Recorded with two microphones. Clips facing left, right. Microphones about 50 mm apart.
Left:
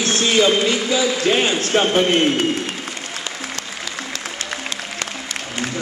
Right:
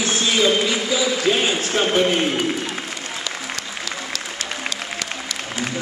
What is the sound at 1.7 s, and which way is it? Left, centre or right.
Speech, left.